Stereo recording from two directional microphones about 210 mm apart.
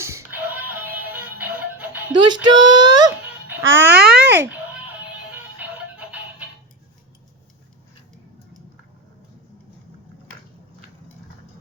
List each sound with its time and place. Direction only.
0.0 s music: 15° right (ahead or behind)
2.1 s speech: 20° right (ahead or behind)
3.4 s music: 10° right (ahead or behind)
3.8 s speech: 50° right (ahead or behind)
4.3 s a sound: 10° right (ahead or behind)
5.3 s music: 5° right (ahead or behind)